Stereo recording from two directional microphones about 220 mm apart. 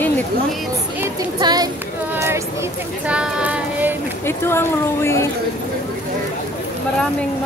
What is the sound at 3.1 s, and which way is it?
Speech, 5° right (ahead or behind).